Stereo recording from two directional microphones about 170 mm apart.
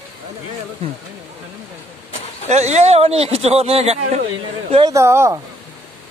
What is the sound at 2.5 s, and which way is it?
Speech, 40° right (ahead or behind).